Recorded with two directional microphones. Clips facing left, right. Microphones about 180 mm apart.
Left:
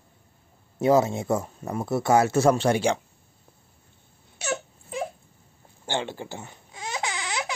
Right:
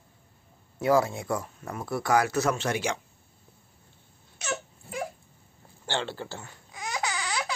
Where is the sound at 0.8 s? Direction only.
20° left (ahead or behind).